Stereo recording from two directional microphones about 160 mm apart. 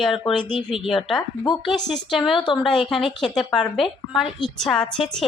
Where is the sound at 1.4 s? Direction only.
30° left (ahead or behind).